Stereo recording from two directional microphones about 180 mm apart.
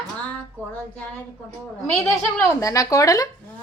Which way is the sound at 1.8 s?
15° left (ahead or behind).